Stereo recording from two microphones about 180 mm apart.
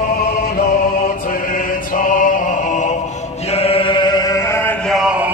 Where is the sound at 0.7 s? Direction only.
50° left (ahead or behind).